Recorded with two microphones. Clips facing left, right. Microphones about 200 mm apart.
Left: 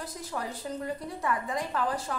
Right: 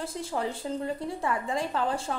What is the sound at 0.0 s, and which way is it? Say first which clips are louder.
A woman's voice: right 5 dB; 25° right (ahead or behind).